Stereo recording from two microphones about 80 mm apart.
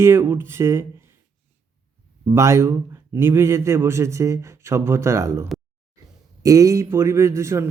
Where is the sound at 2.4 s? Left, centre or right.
Right.